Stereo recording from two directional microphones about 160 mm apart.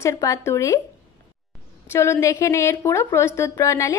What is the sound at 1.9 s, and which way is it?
A woman's voice, 15° left (ahead or behind).